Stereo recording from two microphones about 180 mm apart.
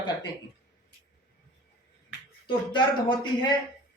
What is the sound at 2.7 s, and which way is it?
Speech, 25° left (ahead or behind).